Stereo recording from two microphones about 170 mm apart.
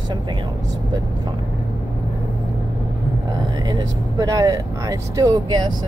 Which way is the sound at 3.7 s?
20° right (ahead or behind).